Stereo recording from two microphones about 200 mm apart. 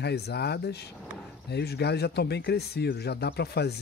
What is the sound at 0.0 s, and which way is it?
Speech, 55° left (ahead or behind).